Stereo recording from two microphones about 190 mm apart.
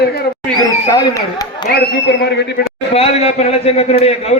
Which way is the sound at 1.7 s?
60° left (ahead or behind).